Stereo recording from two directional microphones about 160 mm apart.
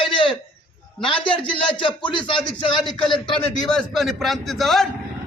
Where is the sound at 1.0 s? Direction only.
35° left (ahead or behind).